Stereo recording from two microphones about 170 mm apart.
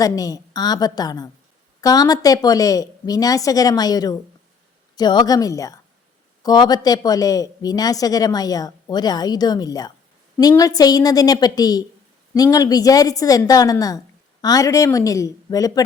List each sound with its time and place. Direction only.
0.0 s a woman's voice: 20° left (ahead or behind)